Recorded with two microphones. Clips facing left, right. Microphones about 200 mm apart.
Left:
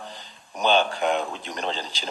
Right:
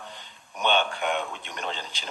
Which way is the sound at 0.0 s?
35° left (ahead or behind).